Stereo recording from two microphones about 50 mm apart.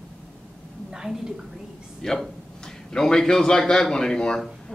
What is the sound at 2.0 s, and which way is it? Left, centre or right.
A man's voice, centre.